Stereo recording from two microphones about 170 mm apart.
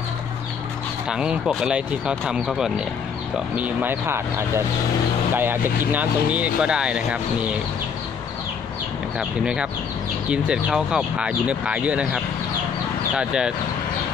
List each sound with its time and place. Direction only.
1.0 s speech: 5° right (ahead or behind)
9.4 s speech: 5° right (ahead or behind)